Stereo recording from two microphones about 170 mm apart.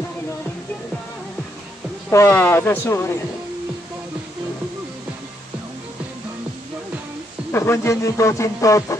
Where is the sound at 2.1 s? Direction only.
15° left (ahead or behind).